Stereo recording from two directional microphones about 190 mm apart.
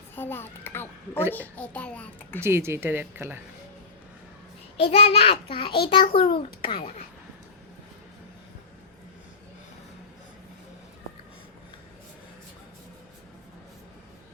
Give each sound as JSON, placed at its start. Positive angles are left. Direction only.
{"t": 0.2, "sound": "a child's voice", "side_deg": 10}
{"t": 2.4, "sound": "speech", "side_deg": -15}
{"t": 4.8, "sound": "a child's voice", "side_deg": 30}